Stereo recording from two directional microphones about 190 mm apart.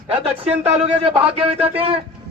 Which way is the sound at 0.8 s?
30° right (ahead or behind).